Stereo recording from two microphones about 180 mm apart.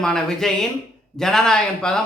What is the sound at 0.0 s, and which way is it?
Speech, 5° left (ahead or behind).